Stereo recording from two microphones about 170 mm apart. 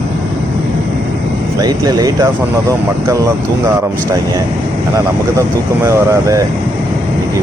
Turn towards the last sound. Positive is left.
turn(degrees=-15)  # may be behind; listen again after turning